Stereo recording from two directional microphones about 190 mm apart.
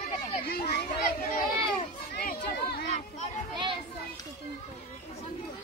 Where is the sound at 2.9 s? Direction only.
35° left (ahead or behind).